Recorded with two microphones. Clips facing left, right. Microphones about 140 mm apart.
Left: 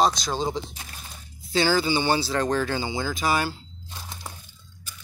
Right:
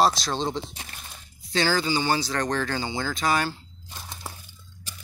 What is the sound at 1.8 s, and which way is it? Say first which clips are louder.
Speech: left 2 dB; 25° left (ahead or behind).